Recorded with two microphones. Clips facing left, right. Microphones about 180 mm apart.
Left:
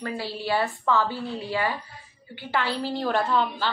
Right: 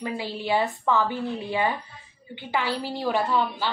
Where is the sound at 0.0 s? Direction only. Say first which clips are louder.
Right 1 dB; 15° right (ahead or behind).